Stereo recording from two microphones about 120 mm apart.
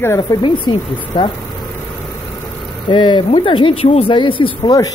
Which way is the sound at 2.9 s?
40° left (ahead or behind).